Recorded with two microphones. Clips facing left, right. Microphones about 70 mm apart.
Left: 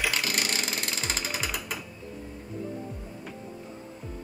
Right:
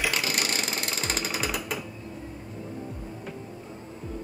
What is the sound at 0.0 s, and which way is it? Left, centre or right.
Ratchet, centre.